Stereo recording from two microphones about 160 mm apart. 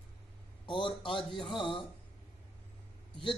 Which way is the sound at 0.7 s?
30° left (ahead or behind).